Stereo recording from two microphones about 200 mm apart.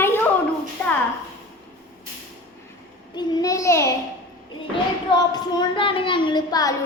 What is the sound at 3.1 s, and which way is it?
Speech, 20° left (ahead or behind).